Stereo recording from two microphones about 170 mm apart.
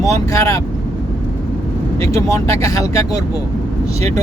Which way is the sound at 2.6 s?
20° left (ahead or behind).